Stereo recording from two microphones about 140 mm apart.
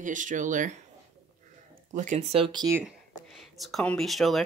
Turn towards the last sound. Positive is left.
turn(degrees=0)  # may be behind; listen again after turning